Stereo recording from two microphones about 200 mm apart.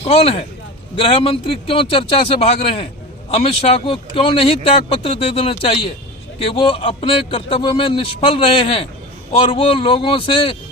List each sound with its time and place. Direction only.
0.0 s a man's voice: 30° left (ahead or behind)